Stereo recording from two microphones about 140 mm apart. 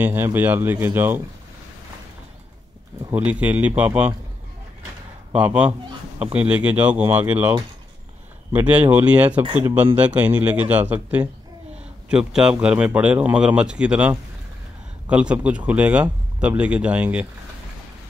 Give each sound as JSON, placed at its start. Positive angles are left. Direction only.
{"t": 0.0, "sound": "a man's voice", "side_deg": -15}
{"t": 2.9, "sound": "speech", "side_deg": -25}
{"t": 3.3, "sound": "a man's voice", "side_deg": -10}
{"t": 5.3, "sound": "a man's voice", "side_deg": -10}
{"t": 8.5, "sound": "a man's voice", "side_deg": -10}